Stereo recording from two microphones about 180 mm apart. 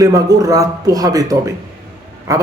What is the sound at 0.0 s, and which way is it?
Speech, 20° right (ahead or behind).